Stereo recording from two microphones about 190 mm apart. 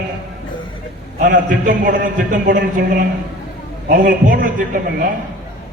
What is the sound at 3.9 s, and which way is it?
A man's voice, 45° right (ahead or behind).